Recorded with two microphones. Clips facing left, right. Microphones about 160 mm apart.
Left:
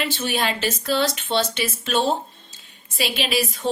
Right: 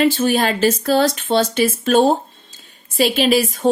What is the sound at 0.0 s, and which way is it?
Speech, 45° right (ahead or behind).